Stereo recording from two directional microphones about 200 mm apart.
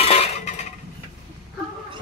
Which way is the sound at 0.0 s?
30° left (ahead or behind).